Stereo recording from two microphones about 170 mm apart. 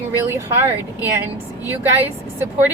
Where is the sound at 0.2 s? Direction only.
15° right (ahead or behind).